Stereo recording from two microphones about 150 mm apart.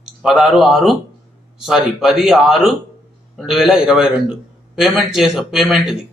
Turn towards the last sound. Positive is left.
turn(degrees=0)  # may be behind; listen again after turning